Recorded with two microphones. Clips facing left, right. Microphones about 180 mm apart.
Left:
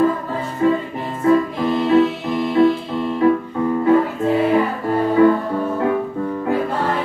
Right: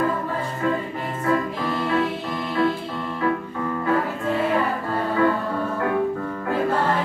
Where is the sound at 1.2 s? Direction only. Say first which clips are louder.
Left 8 dB; 20° left (ahead or behind).